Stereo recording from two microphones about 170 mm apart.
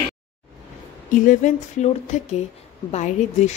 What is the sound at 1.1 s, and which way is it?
A woman's voice, 50° left (ahead or behind).